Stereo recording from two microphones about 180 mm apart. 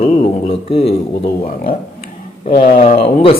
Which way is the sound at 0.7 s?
35° left (ahead or behind).